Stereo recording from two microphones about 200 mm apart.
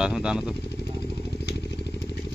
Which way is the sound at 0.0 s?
5° right (ahead or behind).